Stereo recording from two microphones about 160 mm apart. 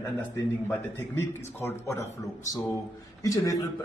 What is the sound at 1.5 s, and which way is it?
Speech, 15° left (ahead or behind).